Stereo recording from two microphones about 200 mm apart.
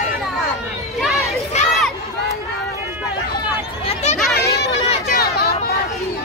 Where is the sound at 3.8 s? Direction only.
30° left (ahead or behind).